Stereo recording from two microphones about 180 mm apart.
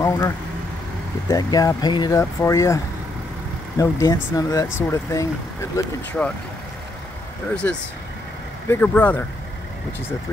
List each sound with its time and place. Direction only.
0.0 s vehicle: 15° left (ahead or behind)
1.3 s speech: 20° left (ahead or behind)
6.2 s speech: 5° left (ahead or behind)
7.6 s speech: 10° left (ahead or behind)